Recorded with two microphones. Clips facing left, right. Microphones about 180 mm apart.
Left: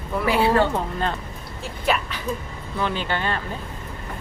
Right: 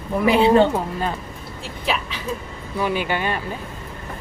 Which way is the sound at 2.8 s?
10° right (ahead or behind).